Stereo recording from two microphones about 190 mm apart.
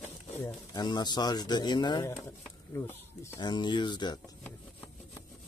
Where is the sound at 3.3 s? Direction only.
25° left (ahead or behind).